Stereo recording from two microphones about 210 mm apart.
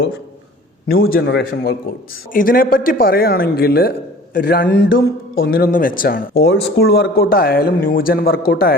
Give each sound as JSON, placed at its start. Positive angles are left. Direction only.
{"t": 0.9, "sound": "speech", "side_deg": 45}